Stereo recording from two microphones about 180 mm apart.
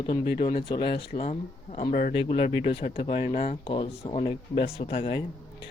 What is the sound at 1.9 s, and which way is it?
Speech, 50° left (ahead or behind).